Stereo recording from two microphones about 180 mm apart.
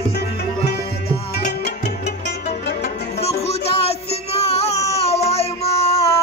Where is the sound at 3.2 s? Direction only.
35° left (ahead or behind).